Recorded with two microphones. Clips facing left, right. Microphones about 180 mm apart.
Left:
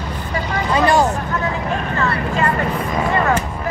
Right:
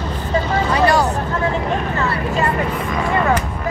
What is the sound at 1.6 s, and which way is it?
Vehicle, 20° right (ahead or behind).